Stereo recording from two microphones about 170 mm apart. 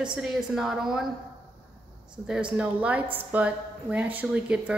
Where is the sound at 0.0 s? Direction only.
5° right (ahead or behind).